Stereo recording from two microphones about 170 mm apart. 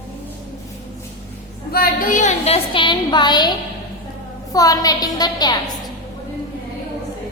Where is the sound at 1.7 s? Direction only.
55° left (ahead or behind); by 3.5 s 25° left (ahead or behind).